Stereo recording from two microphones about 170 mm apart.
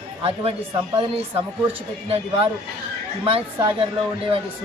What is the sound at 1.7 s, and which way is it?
A man's voice, 35° right (ahead or behind).